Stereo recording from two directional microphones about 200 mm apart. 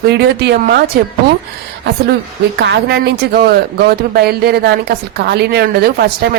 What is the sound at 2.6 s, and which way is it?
Speech, 55° right (ahead or behind).